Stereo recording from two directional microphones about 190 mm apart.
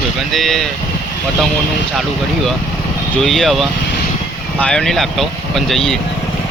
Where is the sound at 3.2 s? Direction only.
Centre (ahead or behind).